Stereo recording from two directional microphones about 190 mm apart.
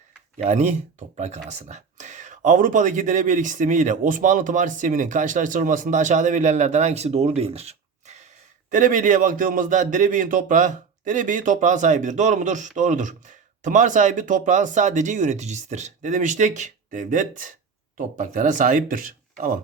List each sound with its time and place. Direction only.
0.3 s a man's voice: 35° right (ahead or behind)